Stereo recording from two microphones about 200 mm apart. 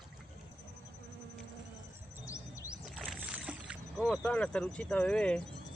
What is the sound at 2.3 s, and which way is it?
Music, 15° left (ahead or behind).